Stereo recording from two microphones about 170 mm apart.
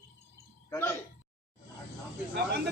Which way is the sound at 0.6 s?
15° left (ahead or behind).